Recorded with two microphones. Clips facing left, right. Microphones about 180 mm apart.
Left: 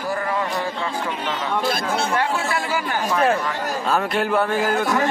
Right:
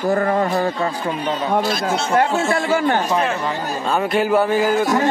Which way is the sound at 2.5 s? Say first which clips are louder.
Right 7 dB; 50° right (ahead or behind).